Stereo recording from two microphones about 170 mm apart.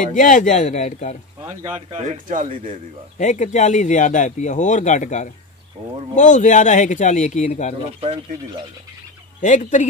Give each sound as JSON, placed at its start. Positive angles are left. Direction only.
{"t": 0.0, "sound": "speech", "side_deg": 50}
{"t": 2.0, "sound": "speech", "side_deg": -50}
{"t": 3.2, "sound": "speech", "side_deg": 45}
{"t": 8.0, "sound": "speech", "side_deg": -35}
{"t": 9.4, "sound": "speech", "side_deg": 45}